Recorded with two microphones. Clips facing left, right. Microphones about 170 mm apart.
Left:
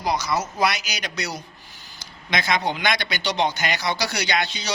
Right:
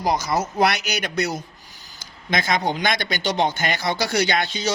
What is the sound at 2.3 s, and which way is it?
Speech, 45° right (ahead or behind).